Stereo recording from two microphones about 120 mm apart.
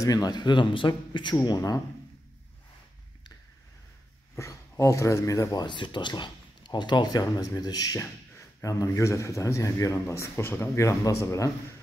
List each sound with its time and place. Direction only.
0.0 s speech: 35° left (ahead or behind)
1.3 s speech: 30° left (ahead or behind)
4.4 s speech: 25° left (ahead or behind)